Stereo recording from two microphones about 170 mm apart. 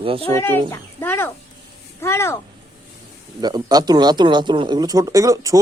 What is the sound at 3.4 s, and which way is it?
Speech, 25° right (ahead or behind).